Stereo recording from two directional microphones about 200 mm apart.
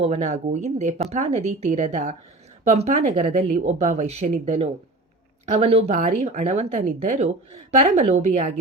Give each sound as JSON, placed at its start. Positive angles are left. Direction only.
{"t": 0.0, "sound": "speech", "side_deg": -35}